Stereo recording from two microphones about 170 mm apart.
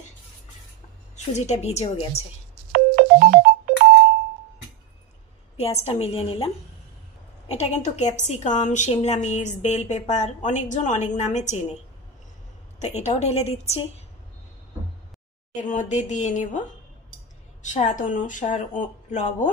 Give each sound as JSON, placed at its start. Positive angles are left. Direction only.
{"t": 1.1, "sound": "a woman's voice", "side_deg": 40}
{"t": 2.7, "sound": "ringtone", "side_deg": -55}
{"t": 5.6, "sound": "a woman's voice", "side_deg": 40}
{"t": 12.7, "sound": "a woman's voice", "side_deg": 40}
{"t": 15.5, "sound": "a woman's voice", "side_deg": 45}
{"t": 17.6, "sound": "a woman's voice", "side_deg": 45}